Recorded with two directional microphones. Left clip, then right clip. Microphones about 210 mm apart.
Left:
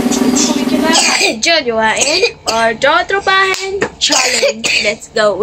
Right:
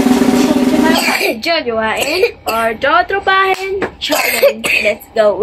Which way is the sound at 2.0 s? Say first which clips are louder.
Left 1 dB; 5° right (ahead or behind).